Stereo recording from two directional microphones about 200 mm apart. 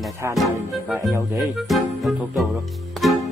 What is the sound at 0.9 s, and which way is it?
Speech, 15° right (ahead or behind).